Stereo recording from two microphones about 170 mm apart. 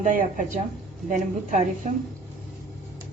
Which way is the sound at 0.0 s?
50° right (ahead or behind).